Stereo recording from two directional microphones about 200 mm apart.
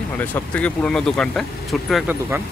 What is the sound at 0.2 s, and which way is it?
Speech, 5° left (ahead or behind).